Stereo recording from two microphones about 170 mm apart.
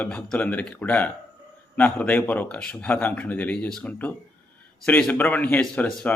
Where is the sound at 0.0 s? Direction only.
10° left (ahead or behind).